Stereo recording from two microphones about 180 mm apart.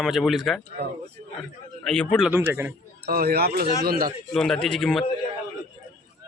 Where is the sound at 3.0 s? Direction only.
60° right (ahead or behind).